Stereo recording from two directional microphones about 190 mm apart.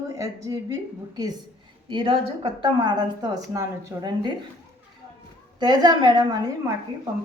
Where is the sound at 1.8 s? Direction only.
25° right (ahead or behind).